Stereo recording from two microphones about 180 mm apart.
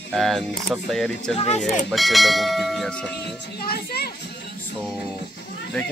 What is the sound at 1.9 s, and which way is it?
Speech, centre (ahead or behind).